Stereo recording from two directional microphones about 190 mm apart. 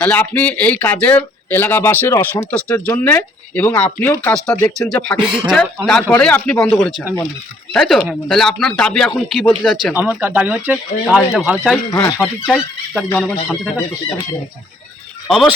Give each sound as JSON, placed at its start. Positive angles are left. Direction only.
{"t": 0.0, "sound": "speech", "side_deg": 10}
{"t": 11.9, "sound": "speech", "side_deg": 15}
{"t": 12.5, "sound": "speech", "side_deg": 0}
{"t": 15.3, "sound": "speech", "side_deg": 0}